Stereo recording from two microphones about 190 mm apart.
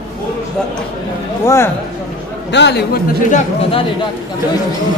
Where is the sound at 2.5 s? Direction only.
65° left (ahead or behind).